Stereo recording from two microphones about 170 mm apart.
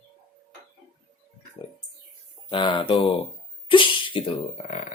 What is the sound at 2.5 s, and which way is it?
Speech, 30° left (ahead or behind).